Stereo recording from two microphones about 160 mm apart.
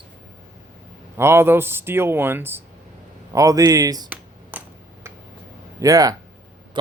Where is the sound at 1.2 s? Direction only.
15° right (ahead or behind).